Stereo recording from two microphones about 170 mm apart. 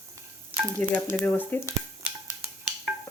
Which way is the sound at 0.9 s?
10° left (ahead or behind).